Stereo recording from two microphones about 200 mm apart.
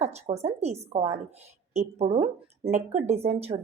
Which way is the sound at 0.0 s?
30° right (ahead or behind).